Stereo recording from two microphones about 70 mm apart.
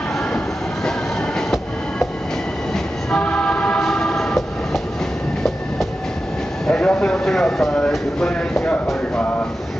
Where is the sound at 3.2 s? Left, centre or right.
Centre.